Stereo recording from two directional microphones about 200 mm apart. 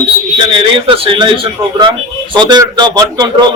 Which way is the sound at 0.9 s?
25° right (ahead or behind).